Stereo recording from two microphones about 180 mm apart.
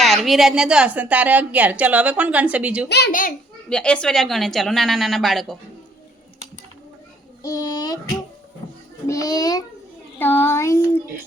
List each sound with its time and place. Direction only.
0.0 s a woman's voice: centre (ahead or behind)
3.1 s a child's voice: 50° left (ahead or behind)
3.7 s a woman's voice: 5° left (ahead or behind)
7.4 s a child's voice: 20° left (ahead or behind)
9.0 s a child's voice: 20° left (ahead or behind)
10.2 s child singing: 10° left (ahead or behind)